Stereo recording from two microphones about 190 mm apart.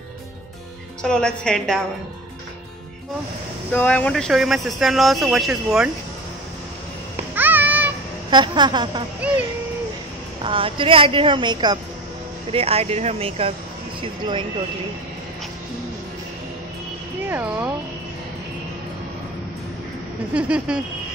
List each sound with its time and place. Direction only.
1.0 s speech: 5° left (ahead or behind)
3.7 s speech: 5° left (ahead or behind)
7.3 s babbling: 10° right (ahead or behind)
8.3 s a woman's voice: 25° right (ahead or behind)
9.2 s speech: 5° right (ahead or behind)
10.4 s a woman's voice: 25° right (ahead or behind)
17.3 s speech: 10° right (ahead or behind)
20.3 s speech: 5° right (ahead or behind)